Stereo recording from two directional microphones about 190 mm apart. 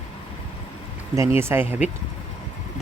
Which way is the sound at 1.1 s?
15° right (ahead or behind).